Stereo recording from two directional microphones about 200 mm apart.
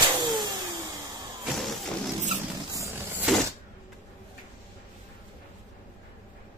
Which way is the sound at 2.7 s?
15° right (ahead or behind).